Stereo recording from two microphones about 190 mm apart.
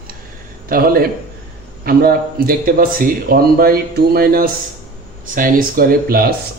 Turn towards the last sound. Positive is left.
turn(degrees=-50)  # may be behind; listen again after turning